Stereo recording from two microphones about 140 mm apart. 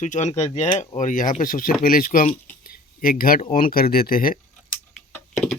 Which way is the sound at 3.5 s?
90° left.